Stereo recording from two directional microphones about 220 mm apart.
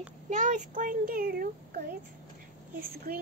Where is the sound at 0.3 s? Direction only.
35° right (ahead or behind).